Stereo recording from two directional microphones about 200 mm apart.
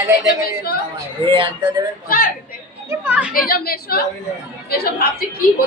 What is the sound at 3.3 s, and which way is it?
Speech, 45° left (ahead or behind).